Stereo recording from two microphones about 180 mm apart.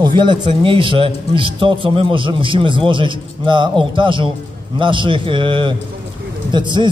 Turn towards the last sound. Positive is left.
turn(degrees=-25)  # may be behind; listen again after turning